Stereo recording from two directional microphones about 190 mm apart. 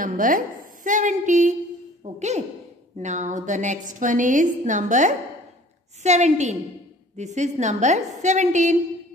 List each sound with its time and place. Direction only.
0.0 s a woman's voice: 45° right (ahead or behind)